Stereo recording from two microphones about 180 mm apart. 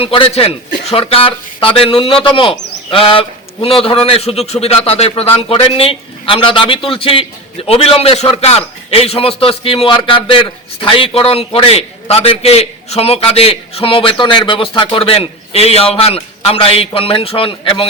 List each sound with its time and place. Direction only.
0.0 s a man's voice: 30° left (ahead or behind)